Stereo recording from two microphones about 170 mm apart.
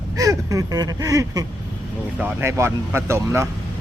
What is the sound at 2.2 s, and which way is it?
Speech, 15° right (ahead or behind).